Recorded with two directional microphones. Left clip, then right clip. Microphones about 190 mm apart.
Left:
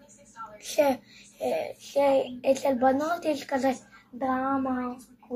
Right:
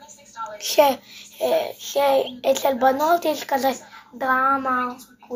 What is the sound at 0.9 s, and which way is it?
A woman's voice, 10° left (ahead or behind).